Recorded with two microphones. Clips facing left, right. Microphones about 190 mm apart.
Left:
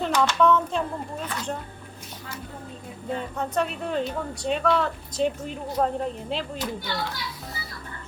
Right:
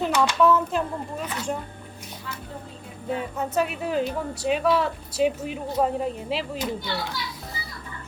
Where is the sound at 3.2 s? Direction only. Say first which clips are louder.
Right 1 dB; 5° right (ahead or behind).